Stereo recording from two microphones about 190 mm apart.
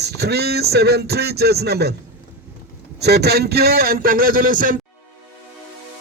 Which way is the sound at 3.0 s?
60° right (ahead or behind).